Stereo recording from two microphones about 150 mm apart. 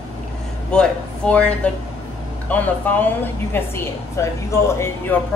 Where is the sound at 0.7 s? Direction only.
10° left (ahead or behind).